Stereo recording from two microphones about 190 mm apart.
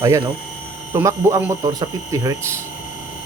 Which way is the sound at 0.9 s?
15° right (ahead or behind).